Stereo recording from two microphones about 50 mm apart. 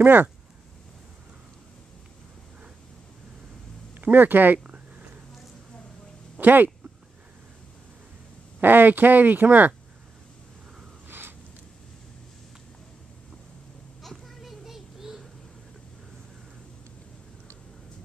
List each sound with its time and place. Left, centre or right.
0.0 s speech: right
3.9 s speech: right
6.4 s speech: right
8.5 s speech: right
11.1 s a sound: right
14.0 s a sound: centre